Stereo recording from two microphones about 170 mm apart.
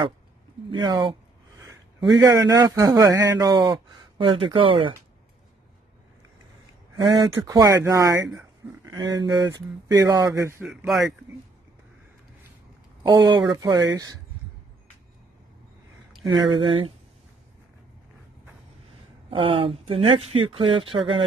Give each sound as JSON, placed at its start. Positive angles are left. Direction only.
{"t": 0.7, "sound": "a man's voice", "side_deg": -25}
{"t": 7.0, "sound": "a man's voice", "side_deg": -20}
{"t": 10.6, "sound": "speech", "side_deg": -5}
{"t": 13.1, "sound": "a man's voice", "side_deg": -20}
{"t": 16.3, "sound": "speech", "side_deg": -30}
{"t": 19.3, "sound": "speech", "side_deg": -30}